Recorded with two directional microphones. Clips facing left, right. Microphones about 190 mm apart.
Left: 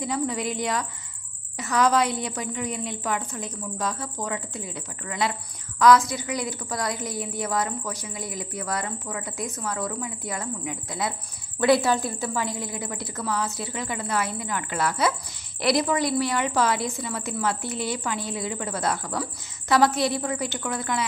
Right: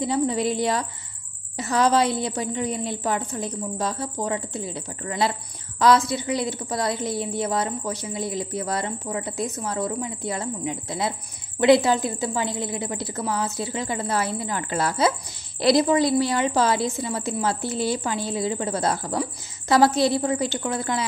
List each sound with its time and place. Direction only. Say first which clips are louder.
0.0 s a woman's voice: right 5 dB; 30° right (ahead or behind)